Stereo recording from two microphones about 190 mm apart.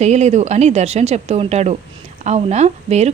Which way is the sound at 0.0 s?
35° right (ahead or behind).